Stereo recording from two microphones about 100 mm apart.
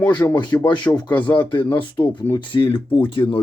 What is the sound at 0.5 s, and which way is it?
Speech, 30° left (ahead or behind).